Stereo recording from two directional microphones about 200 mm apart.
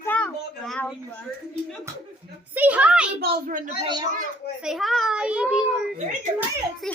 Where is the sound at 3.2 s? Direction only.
40° right (ahead or behind).